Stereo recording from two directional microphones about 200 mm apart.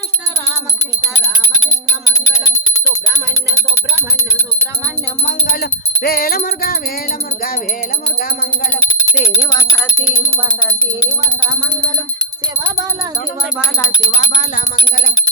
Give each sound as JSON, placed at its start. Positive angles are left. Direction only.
{"t": 5.5, "sound": "music", "side_deg": 50}
{"t": 9.4, "sound": "speech", "side_deg": 20}
{"t": 14.2, "sound": "a sound", "side_deg": 35}